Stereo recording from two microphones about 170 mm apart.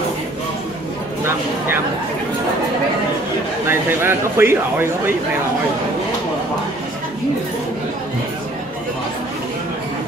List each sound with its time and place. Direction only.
3.6 s speech: 15° right (ahead or behind)